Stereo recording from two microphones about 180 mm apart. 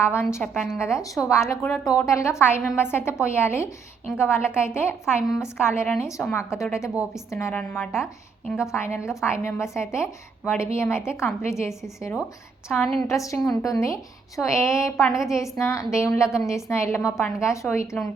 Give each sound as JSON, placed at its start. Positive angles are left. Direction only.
{"t": 0.0, "sound": "a woman's voice", "side_deg": 15}
{"t": 0.5, "sound": "a woman's voice", "side_deg": 0}
{"t": 0.8, "sound": "a woman's voice", "side_deg": 15}
{"t": 12.7, "sound": "a woman's voice", "side_deg": 0}
{"t": 13.1, "sound": "a woman's voice", "side_deg": 15}
{"t": 13.4, "sound": "a woman's voice", "side_deg": 5}
{"t": 13.8, "sound": "a woman's voice", "side_deg": 15}
{"t": 15.0, "sound": "a woman's voice", "side_deg": 0}
{"t": 15.3, "sound": "a woman's voice", "side_deg": 15}